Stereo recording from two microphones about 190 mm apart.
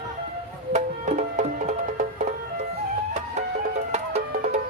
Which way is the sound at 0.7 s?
40° right (ahead or behind).